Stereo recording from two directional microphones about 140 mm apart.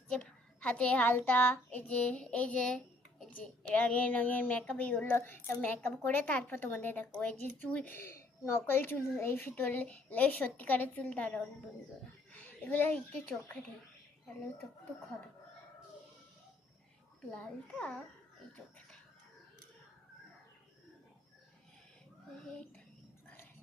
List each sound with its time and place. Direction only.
0.1 s a child's voice: 10° left (ahead or behind)
12.3 s a sound: 10° left (ahead or behind)
17.2 s a child's voice: 5° left (ahead or behind)